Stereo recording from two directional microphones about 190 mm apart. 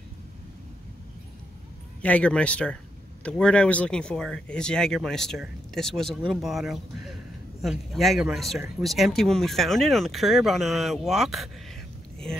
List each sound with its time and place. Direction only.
2.0 s speech: 5° left (ahead or behind)